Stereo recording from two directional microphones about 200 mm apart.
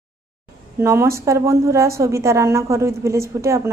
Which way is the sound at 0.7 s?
10° right (ahead or behind).